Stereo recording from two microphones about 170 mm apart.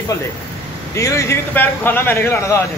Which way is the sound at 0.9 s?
15° left (ahead or behind).